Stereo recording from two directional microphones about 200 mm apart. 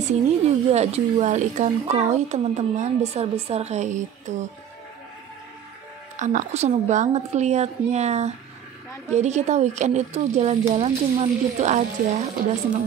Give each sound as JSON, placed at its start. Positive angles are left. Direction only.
{"t": 0.1, "sound": "speech", "side_deg": -35}
{"t": 6.1, "sound": "speech", "side_deg": -35}